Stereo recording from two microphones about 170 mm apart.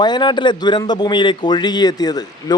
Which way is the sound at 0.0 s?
25° left (ahead or behind).